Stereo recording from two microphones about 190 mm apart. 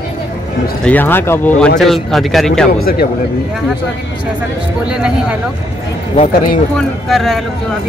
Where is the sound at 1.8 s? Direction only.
Centre (ahead or behind).